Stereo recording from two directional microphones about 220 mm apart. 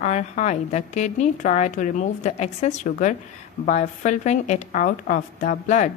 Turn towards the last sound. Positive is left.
turn(degrees=35)  # may be behind; listen again after turning